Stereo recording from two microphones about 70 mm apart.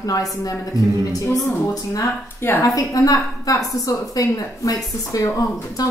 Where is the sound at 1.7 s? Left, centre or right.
Left.